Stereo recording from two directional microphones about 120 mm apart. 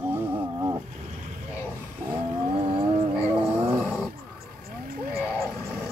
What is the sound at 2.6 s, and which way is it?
Cat, 50° right (ahead or behind).